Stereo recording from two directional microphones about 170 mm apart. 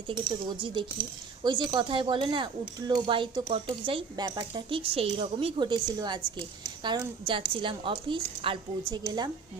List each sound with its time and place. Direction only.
0.1 s speech: 25° right (ahead or behind)